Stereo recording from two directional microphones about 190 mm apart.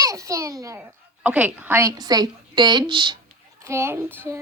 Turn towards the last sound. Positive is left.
turn(degrees=-15)  # may be behind; listen again after turning